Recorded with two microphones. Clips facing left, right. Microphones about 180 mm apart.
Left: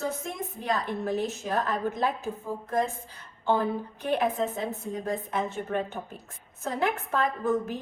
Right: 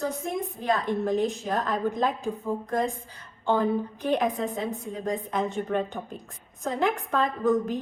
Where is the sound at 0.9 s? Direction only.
15° right (ahead or behind).